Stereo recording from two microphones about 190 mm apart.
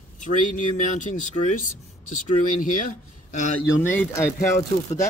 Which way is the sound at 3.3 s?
40° left (ahead or behind).